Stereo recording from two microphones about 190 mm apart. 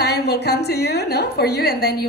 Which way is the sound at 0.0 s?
60° left (ahead or behind).